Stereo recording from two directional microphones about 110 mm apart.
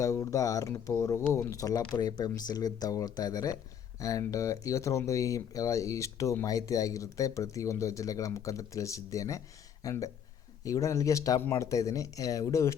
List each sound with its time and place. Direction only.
0.0 s speech: 30° left (ahead or behind)